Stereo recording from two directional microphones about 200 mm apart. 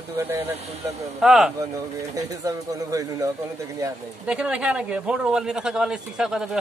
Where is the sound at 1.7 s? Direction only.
15° right (ahead or behind).